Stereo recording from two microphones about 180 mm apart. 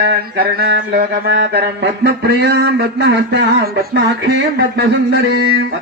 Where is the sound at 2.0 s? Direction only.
65° right (ahead or behind).